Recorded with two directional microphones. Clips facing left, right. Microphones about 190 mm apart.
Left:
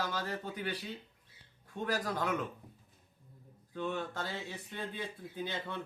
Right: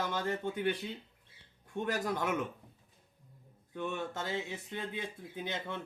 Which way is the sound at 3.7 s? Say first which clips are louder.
Even; 20° right (ahead or behind).